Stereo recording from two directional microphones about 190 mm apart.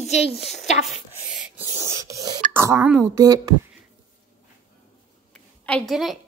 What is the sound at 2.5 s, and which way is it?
A woman's voice, 15° right (ahead or behind).